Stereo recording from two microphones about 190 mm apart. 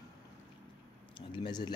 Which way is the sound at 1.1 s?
25° left (ahead or behind).